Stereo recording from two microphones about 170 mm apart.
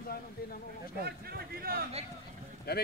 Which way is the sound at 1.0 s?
65° right (ahead or behind).